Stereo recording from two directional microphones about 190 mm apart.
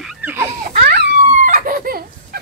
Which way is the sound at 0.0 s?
Centre (ahead or behind).